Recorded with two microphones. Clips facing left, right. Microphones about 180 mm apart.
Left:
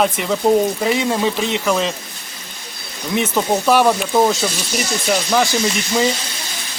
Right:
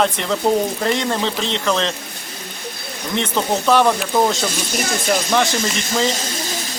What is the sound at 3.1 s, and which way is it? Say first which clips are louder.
Speech: left 2 dB; 10° left (ahead or behind).